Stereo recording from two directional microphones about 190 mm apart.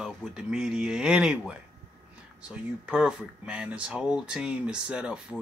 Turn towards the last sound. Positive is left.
turn(degrees=-5)  # may be behind; listen again after turning